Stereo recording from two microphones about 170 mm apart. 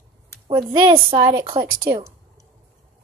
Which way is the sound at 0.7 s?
30° right (ahead or behind).